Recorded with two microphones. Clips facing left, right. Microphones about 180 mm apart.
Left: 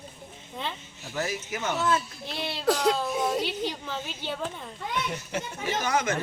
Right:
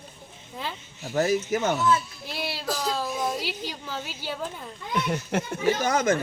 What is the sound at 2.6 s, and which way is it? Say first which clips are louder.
Speech: left 8 dB; 70° left (ahead or behind).